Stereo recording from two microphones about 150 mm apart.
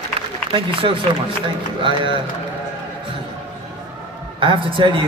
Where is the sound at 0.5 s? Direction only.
35° right (ahead or behind).